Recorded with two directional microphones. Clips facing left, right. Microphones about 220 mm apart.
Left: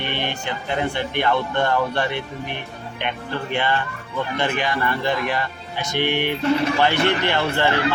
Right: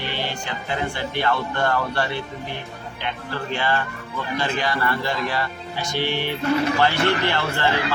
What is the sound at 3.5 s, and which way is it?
Speech, 20° left (ahead or behind).